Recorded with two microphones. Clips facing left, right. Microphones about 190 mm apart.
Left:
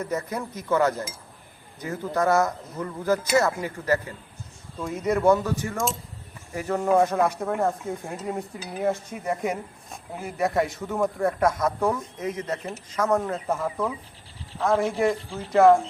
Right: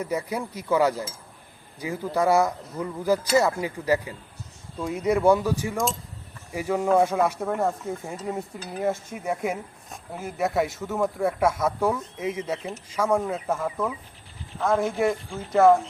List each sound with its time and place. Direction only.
0.0 s speech: 10° right (ahead or behind)